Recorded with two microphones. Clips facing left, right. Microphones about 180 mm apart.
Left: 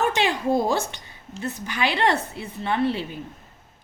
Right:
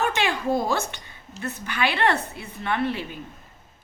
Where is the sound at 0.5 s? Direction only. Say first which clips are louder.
Left 2 dB; 30° left (ahead or behind).